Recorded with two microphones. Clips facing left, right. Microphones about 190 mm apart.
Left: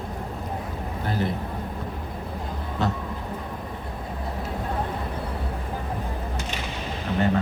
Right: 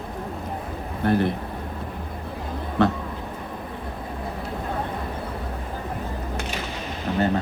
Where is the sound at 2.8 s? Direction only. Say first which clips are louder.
Right 6 dB; 60° right (ahead or behind).